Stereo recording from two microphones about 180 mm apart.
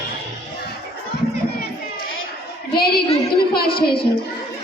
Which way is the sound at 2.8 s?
60° left (ahead or behind).